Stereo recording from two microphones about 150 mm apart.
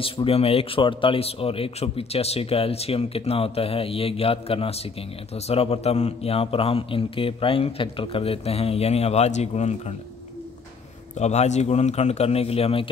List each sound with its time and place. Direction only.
0.0 s speech: 40° left (ahead or behind)
11.1 s a man's voice: 50° left (ahead or behind)